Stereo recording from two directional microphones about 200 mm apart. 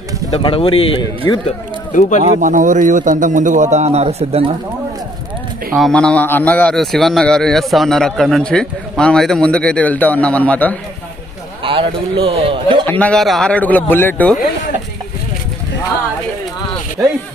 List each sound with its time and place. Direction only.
0.4 s speech: 25° left (ahead or behind)
2.0 s speech: 40° left (ahead or behind)
2.2 s a man's voice: 40° right (ahead or behind)
5.8 s a man's voice: 5° left (ahead or behind)
11.6 s a man's voice: 25° right (ahead or behind)
12.8 s a man's voice: 10° left (ahead or behind)
17.0 s speech: 15° right (ahead or behind)